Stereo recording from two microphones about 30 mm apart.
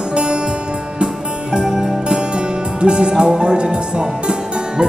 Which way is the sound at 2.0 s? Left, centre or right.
Right.